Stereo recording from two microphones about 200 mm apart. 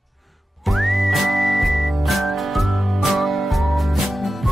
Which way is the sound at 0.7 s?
Centre (ahead or behind).